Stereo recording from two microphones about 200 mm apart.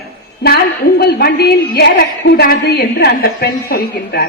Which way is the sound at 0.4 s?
50° left (ahead or behind).